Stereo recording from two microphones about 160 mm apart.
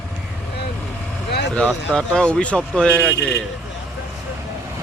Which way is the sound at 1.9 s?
5° left (ahead or behind).